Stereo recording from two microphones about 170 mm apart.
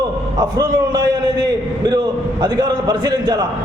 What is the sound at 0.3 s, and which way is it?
A man's voice, 25° right (ahead or behind).